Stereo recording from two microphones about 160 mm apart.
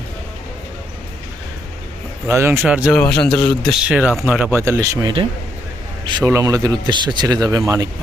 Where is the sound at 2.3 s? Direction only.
15° right (ahead or behind).